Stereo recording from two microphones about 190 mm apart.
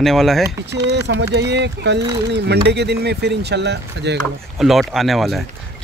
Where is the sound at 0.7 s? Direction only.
65° right (ahead or behind).